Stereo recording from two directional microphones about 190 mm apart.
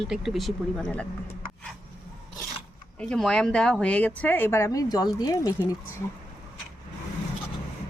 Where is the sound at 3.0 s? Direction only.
5° left (ahead or behind); by 5.7 s 20° left (ahead or behind).